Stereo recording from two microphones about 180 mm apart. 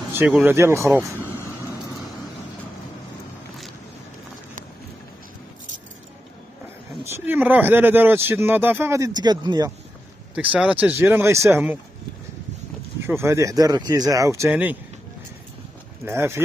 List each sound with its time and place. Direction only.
0.1 s speech: 10° right (ahead or behind)
7.1 s speech: 10° right (ahead or behind)
10.3 s speech: 5° right (ahead or behind)
13.0 s speech: 15° right (ahead or behind)
16.1 s speech: 15° right (ahead or behind)